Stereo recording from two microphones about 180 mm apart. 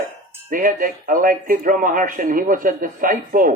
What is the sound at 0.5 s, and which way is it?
Speech, 50° right (ahead or behind).